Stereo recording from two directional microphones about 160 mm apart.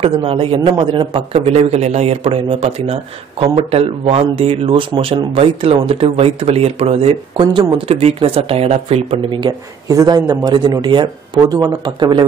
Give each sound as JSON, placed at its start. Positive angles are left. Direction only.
{"t": 0.0, "sound": "a man's voice", "side_deg": -35}